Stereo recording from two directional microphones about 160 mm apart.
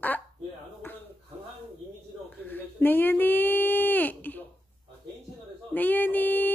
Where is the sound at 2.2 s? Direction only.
10° left (ahead or behind).